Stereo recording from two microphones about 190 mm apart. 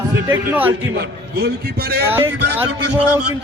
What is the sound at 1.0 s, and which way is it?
A man's voice, 60° right (ahead or behind).